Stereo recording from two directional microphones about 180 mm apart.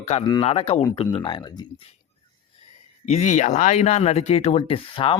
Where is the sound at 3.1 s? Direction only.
45° left (ahead or behind).